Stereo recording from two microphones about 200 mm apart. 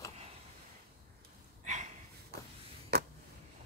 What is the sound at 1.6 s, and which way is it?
Snort, 35° right (ahead or behind).